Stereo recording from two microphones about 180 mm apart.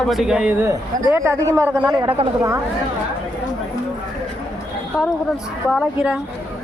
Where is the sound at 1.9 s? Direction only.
25° right (ahead or behind).